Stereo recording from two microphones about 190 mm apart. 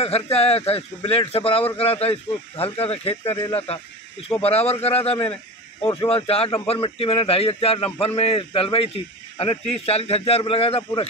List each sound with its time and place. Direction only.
0.0 s a man's voice: 30° left (ahead or behind)
3.3 s speech: 20° left (ahead or behind)
4.4 s a man's voice: 30° left (ahead or behind)